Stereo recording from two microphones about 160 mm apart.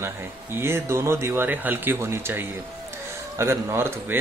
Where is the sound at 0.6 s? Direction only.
15° right (ahead or behind).